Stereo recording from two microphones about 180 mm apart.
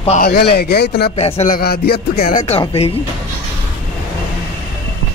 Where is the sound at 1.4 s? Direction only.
55° left (ahead or behind).